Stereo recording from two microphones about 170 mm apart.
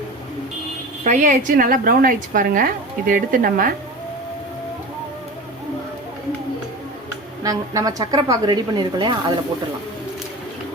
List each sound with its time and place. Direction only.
1.0 s a woman's voice: 45° right (ahead or behind)
7.4 s a woman's voice: 20° right (ahead or behind)